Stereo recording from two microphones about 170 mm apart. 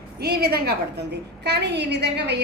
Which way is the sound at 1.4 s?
80° right.